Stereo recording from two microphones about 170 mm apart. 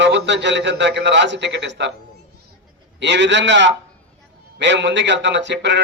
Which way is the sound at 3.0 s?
90° right.